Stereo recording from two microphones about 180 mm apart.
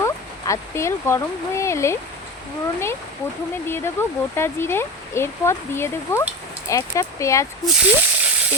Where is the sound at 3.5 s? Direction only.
10° left (ahead or behind).